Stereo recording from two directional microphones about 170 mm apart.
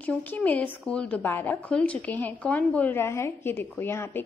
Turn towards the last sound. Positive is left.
turn(degrees=15)  # may be behind; listen again after turning